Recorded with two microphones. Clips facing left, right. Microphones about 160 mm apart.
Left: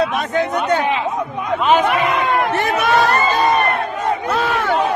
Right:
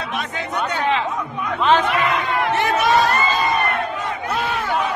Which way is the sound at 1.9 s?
55° left (ahead or behind).